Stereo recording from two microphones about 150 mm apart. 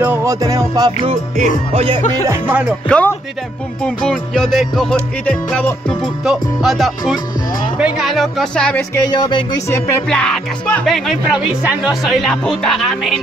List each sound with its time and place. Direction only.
0.0 s music: 20° right (ahead or behind)
1.0 s music: 50° right (ahead or behind)
1.7 s speech: 40° right (ahead or behind)
2.2 s music: 15° right (ahead or behind)
2.9 s music: 10° left (ahead or behind)
3.8 s speech: centre (ahead or behind)
5.2 s music: 5° left (ahead or behind)
6.2 s speech: centre (ahead or behind)
8.9 s music: 30° left (ahead or behind)
10.0 s speech: 5° left (ahead or behind)